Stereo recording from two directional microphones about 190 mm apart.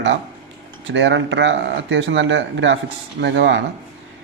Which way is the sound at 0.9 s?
75° right (ahead or behind).